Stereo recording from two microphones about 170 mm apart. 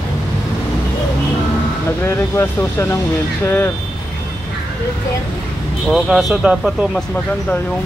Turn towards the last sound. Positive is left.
turn(degrees=-5)  # may be behind; listen again after turning